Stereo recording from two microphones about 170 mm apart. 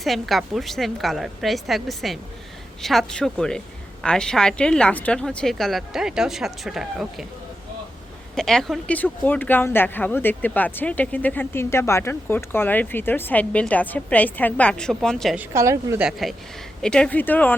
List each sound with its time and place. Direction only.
0.0 s speech: centre (ahead or behind)
8.4 s speech: 5° left (ahead or behind)
15.4 s a woman's voice: 15° right (ahead or behind)
16.0 s speech: centre (ahead or behind)